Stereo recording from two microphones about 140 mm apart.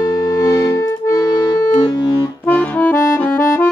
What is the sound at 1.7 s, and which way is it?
Music, 25° left (ahead or behind).